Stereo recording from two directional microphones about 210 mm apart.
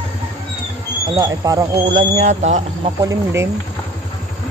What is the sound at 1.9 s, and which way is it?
Speech, 35° right (ahead or behind).